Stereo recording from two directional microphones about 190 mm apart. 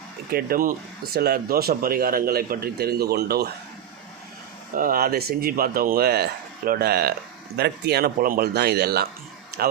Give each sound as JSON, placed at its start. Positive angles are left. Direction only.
{"t": 0.3, "sound": "a man's voice", "side_deg": -55}
{"t": 4.7, "sound": "a man's voice", "side_deg": -45}